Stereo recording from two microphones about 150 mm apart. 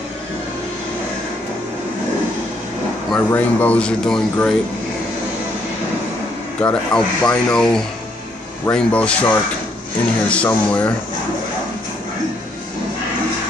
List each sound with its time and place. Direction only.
3.1 s speech: 10° left (ahead or behind)
6.6 s speech: 5° left (ahead or behind)